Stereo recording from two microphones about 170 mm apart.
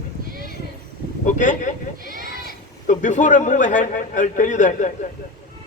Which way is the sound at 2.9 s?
45° left (ahead or behind).